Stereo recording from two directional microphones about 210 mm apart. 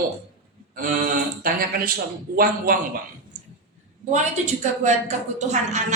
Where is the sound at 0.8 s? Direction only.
40° right (ahead or behind).